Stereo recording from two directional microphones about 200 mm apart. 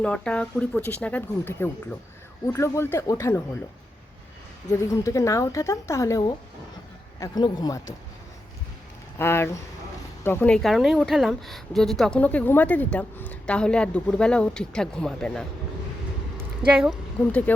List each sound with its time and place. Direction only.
0.0 s speech: 5° left (ahead or behind)
4.8 s speech: 15° left (ahead or behind)
9.1 s speech: 10° left (ahead or behind)